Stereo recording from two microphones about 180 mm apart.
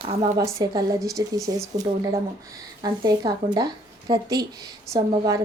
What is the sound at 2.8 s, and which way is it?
A woman's voice, 20° right (ahead or behind).